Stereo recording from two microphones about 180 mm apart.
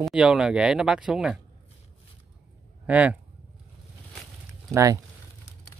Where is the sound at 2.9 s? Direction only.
5° right (ahead or behind).